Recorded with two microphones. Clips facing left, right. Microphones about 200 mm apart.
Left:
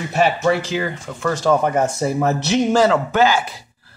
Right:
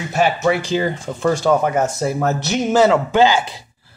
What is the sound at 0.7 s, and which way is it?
Speech, 30° right (ahead or behind).